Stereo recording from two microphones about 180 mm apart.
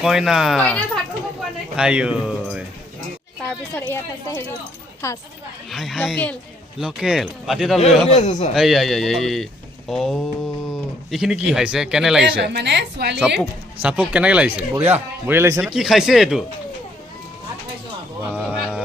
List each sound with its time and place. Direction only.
0.0 s speech: centre (ahead or behind)
1.7 s speech: 5° right (ahead or behind)
3.8 s speech: 10° left (ahead or behind)
5.7 s speech: centre (ahead or behind)
8.1 s a man's voice: 40° left (ahead or behind)
8.5 s speech: centre (ahead or behind)
12.2 s a woman's voice: 70° right (ahead or behind)
13.8 s speech: 5° right (ahead or behind)
15.6 s speech: centre (ahead or behind)
18.3 s a sound: 5° right (ahead or behind)